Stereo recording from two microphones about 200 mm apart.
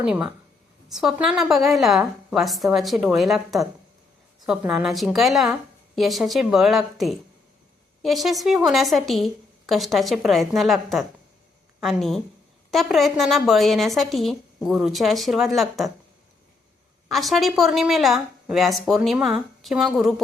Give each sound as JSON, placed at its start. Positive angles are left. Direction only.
{"t": 0.0, "sound": "a woman's voice", "side_deg": -5}
{"t": 17.1, "sound": "a woman's voice", "side_deg": 0}